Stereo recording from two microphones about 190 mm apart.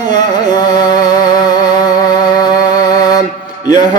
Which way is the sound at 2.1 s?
20° left (ahead or behind).